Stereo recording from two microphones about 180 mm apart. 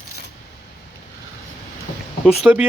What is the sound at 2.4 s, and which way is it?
Speech, 5° right (ahead or behind).